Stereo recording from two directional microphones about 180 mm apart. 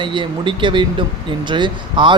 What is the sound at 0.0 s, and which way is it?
A man's voice, 25° right (ahead or behind).